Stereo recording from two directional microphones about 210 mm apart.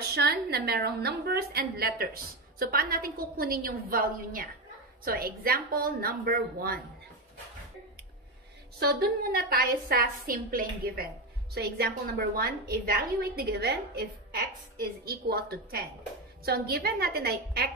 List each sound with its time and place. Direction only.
0.1 s a woman's voice: 50° right (ahead or behind)
8.7 s a woman's voice: 50° right (ahead or behind)